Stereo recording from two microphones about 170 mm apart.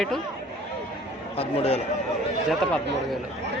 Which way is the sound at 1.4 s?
35° left (ahead or behind).